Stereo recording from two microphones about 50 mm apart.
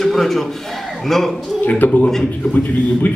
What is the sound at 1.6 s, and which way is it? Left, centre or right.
Speech, left.